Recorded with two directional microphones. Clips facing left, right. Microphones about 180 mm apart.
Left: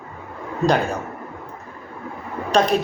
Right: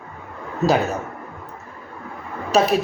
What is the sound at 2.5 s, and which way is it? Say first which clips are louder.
Speech: even; 5° right (ahead or behind).